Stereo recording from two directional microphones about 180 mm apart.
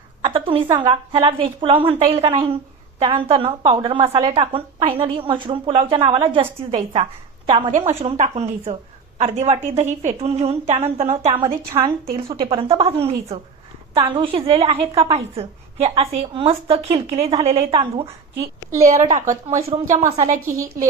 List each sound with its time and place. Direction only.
0.2 s a woman's voice: 30° right (ahead or behind)
11.4 s a woman's voice: 15° right (ahead or behind)
12.3 s a woman's voice: 30° right (ahead or behind)
19.0 s a woman's voice: 40° right (ahead or behind)